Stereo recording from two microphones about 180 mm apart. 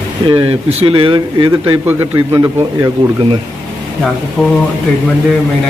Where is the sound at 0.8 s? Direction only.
30° right (ahead or behind).